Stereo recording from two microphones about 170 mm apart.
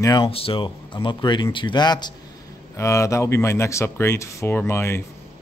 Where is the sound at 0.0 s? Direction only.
25° left (ahead or behind).